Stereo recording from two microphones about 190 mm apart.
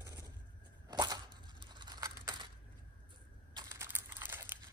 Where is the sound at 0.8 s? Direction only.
20° right (ahead or behind).